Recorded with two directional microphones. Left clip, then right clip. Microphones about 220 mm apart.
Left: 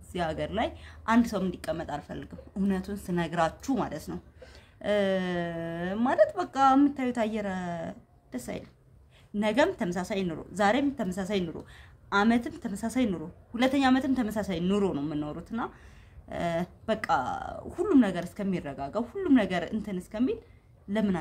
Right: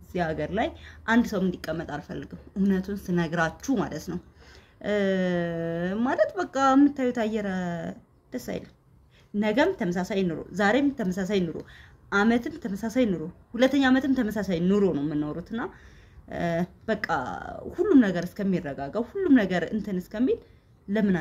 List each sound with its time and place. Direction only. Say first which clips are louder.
0.1 s a woman's voice: right 3 dB; centre (ahead or behind)